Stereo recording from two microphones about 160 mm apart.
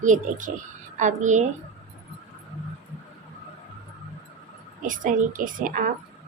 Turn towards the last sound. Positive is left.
turn(degrees=-60)  # may be behind; listen again after turning